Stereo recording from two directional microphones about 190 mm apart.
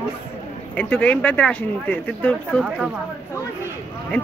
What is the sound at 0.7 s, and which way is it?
Speech, 10° left (ahead or behind).